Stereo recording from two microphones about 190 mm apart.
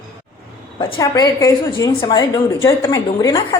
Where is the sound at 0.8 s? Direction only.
25° left (ahead or behind).